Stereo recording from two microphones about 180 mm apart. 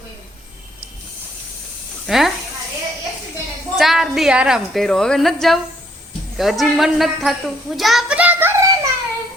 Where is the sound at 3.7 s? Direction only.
Centre (ahead or behind).